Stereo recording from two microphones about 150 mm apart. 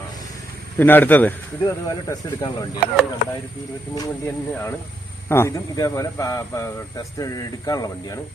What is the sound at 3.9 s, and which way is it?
A man's voice, 15° left (ahead or behind).